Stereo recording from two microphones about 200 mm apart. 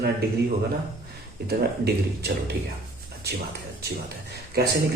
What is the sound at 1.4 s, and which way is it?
Speech, 55° right (ahead or behind).